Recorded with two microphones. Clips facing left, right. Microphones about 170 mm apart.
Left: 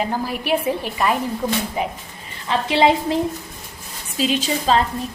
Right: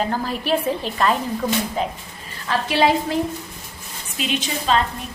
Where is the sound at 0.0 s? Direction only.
10° left (ahead or behind).